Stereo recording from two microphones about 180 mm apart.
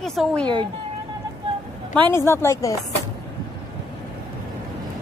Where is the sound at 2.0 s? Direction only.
15° left (ahead or behind).